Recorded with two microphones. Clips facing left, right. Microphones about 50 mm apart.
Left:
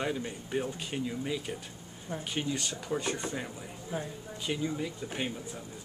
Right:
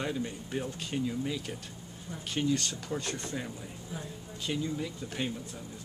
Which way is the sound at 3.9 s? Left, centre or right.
Left.